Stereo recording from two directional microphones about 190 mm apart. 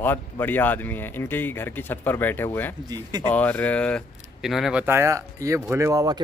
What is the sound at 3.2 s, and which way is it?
Speech, 10° left (ahead or behind).